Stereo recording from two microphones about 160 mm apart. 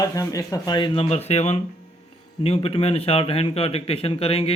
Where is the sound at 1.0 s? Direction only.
40° left (ahead or behind).